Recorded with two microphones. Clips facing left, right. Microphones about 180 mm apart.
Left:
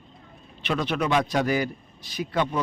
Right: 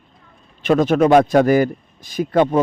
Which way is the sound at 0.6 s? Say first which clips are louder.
Right 12 dB; 45° right (ahead or behind).